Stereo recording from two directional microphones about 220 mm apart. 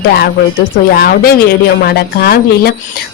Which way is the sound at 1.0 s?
45° left (ahead or behind).